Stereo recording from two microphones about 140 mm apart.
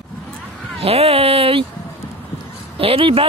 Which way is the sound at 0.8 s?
45° right (ahead or behind).